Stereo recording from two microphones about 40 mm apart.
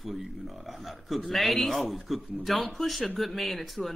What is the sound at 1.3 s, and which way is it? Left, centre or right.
A man's voice, centre.